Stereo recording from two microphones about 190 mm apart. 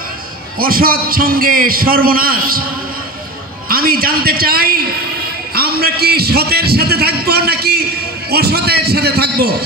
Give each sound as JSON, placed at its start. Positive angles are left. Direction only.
{"t": 0.6, "sound": "a man's voice", "side_deg": -50}
{"t": 3.6, "sound": "a man's voice", "side_deg": -50}